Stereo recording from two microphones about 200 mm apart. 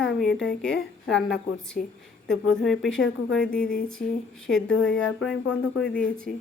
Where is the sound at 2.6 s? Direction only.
Centre (ahead or behind).